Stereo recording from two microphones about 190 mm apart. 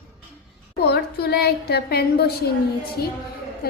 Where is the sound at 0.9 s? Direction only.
60° left (ahead or behind).